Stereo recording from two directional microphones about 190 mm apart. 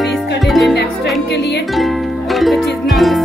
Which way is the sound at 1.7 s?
Centre (ahead or behind).